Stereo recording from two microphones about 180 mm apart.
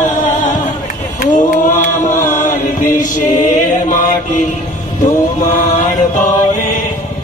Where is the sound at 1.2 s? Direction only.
45° left (ahead or behind).